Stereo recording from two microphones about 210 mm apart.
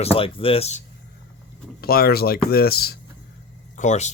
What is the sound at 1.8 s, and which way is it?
Speech, 45° left (ahead or behind).